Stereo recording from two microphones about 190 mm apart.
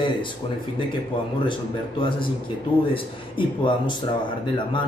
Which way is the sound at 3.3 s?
25° left (ahead or behind).